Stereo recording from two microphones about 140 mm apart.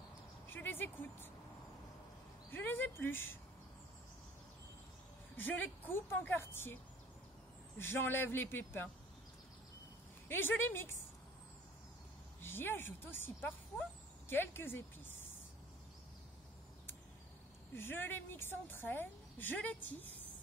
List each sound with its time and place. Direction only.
0.5 s vehicle: 15° left (ahead or behind)
2.5 s a woman's voice: 15° left (ahead or behind)
5.3 s a woman's voice: 15° left (ahead or behind)
7.8 s a woman's voice: 15° left (ahead or behind)
10.2 s a woman's voice: 15° left (ahead or behind)
12.4 s a woman's voice: 15° left (ahead or behind)
17.7 s a woman's voice: 15° left (ahead or behind)